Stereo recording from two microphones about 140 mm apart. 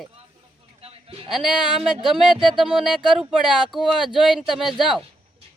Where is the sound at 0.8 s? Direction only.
45° right (ahead or behind).